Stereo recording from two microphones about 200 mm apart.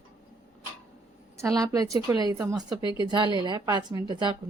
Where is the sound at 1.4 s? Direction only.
20° right (ahead or behind).